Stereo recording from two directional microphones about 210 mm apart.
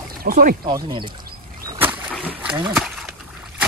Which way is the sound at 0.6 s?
20° right (ahead or behind).